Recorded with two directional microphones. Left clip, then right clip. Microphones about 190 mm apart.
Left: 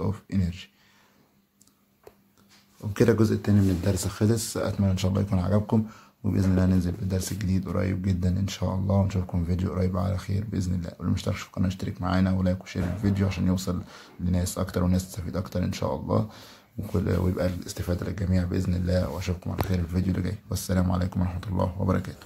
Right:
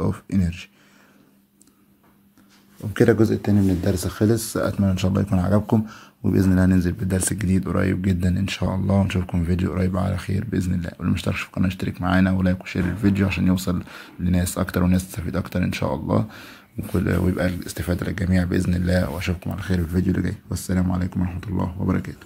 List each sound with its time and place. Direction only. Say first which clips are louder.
0.0 s speech: right 6 dB; 25° right (ahead or behind)
2.9 s speech: right 5 dB; 10° right (ahead or behind)